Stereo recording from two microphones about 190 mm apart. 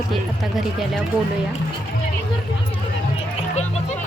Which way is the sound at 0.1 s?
Centre (ahead or behind).